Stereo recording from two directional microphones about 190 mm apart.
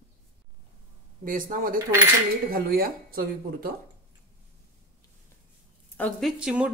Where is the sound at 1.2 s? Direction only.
45° right (ahead or behind).